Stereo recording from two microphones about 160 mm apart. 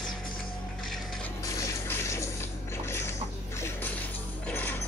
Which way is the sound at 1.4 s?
20° left (ahead or behind).